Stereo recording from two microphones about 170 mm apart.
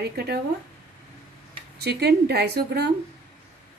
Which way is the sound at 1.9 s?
75° right (ahead or behind).